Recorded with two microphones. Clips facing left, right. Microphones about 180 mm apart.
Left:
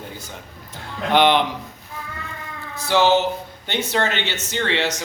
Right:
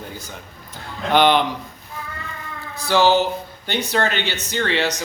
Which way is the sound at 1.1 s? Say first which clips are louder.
Right 1 dB; 20° left (ahead or behind).